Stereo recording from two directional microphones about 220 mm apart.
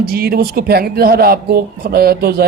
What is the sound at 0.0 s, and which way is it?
Speech, 45° right (ahead or behind).